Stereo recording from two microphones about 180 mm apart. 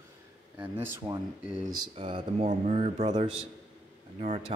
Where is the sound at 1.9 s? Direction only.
30° right (ahead or behind).